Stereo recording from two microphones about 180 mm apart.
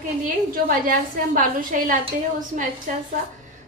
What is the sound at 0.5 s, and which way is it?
A woman's voice, 50° right (ahead or behind).